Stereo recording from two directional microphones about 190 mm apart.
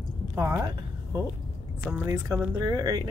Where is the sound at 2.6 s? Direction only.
20° right (ahead or behind).